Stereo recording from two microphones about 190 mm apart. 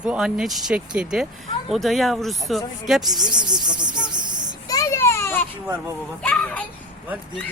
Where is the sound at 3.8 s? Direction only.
25° right (ahead or behind).